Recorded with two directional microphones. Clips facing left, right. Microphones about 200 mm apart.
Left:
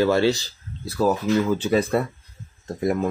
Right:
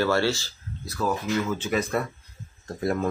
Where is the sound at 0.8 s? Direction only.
35° left (ahead or behind).